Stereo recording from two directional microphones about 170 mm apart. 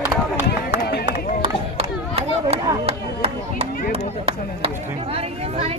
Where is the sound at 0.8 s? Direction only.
70° left (ahead or behind).